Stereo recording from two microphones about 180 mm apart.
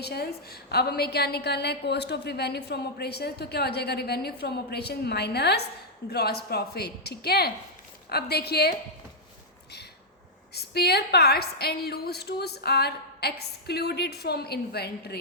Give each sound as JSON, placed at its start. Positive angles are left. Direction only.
{"t": 0.0, "sound": "a woman's voice", "side_deg": 60}
{"t": 10.5, "sound": "a woman's voice", "side_deg": 65}